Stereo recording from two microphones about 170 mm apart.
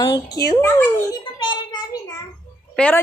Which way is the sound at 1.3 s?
25° left (ahead or behind).